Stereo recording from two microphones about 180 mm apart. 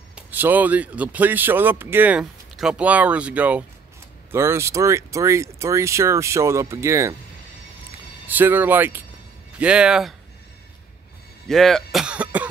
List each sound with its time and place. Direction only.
0.1 s a man's voice: 10° right (ahead or behind)
8.3 s a man's voice: 10° right (ahead or behind)
11.4 s speech: centre (ahead or behind)